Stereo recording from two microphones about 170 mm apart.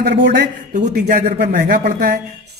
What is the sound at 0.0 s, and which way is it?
Speech, 70° right (ahead or behind).